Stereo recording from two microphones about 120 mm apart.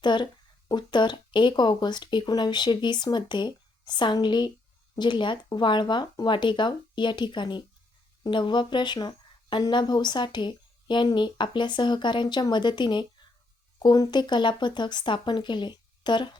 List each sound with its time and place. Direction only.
0.0 s speech: 40° left (ahead or behind)